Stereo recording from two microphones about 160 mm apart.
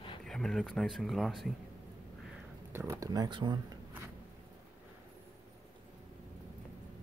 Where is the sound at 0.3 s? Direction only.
Centre (ahead or behind).